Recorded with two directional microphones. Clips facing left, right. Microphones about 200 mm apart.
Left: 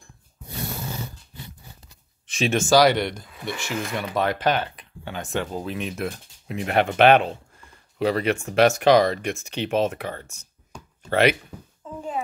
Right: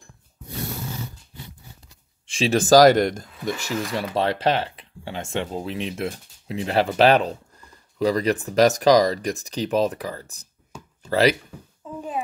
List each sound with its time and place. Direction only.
2.2 s speech: 30° right (ahead or behind)